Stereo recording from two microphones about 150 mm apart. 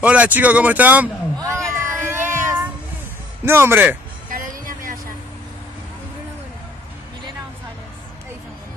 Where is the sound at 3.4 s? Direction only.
15° right (ahead or behind).